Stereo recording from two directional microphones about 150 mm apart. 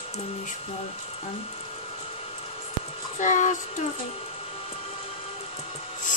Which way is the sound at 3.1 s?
55° left (ahead or behind).